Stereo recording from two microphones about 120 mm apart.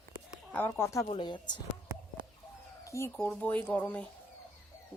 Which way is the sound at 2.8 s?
25° left (ahead or behind).